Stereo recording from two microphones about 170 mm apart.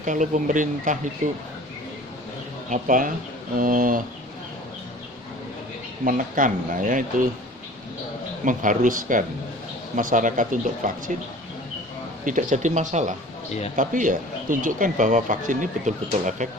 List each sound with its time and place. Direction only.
0.0 s speech: 50° right (ahead or behind)
2.6 s speech: 50° right (ahead or behind)
6.1 s speech: 50° right (ahead or behind)
8.4 s speech: 50° right (ahead or behind)
12.2 s speech: 50° right (ahead or behind)